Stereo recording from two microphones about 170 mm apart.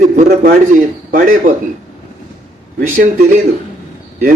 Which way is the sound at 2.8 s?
50° right (ahead or behind).